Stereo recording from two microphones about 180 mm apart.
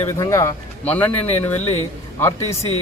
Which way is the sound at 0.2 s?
15° left (ahead or behind).